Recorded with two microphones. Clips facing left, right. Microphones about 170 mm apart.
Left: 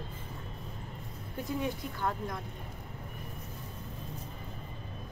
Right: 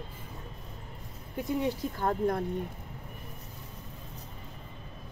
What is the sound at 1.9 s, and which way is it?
Speech, 45° right (ahead or behind).